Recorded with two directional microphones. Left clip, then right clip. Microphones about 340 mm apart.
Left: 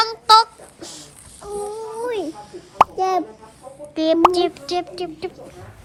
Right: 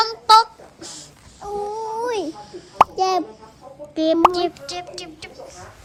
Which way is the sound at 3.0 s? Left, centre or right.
Centre.